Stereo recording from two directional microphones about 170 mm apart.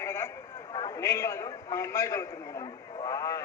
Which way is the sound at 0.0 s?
15° left (ahead or behind).